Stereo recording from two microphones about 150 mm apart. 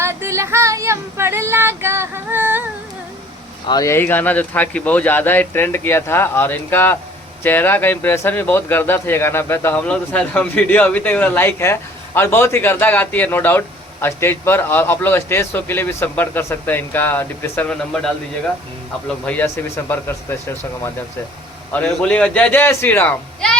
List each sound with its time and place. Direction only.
0.0 s child singing: 15° right (ahead or behind)
3.7 s speech: 20° left (ahead or behind); by 18.1 s 5° left (ahead or behind)
19.2 s speech: 10° left (ahead or behind)